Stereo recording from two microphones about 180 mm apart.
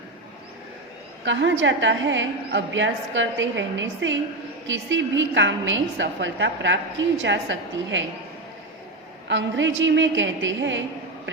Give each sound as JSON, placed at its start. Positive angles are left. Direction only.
{"t": 1.2, "sound": "a woman's voice", "side_deg": -90}
{"t": 9.2, "sound": "a woman's voice", "side_deg": -90}